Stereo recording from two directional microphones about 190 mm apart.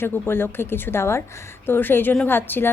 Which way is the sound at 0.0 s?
10° left (ahead or behind).